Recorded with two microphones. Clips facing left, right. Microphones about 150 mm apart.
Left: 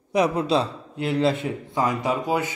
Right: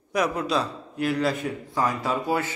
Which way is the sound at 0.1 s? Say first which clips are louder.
Left 4 dB; 30° left (ahead or behind).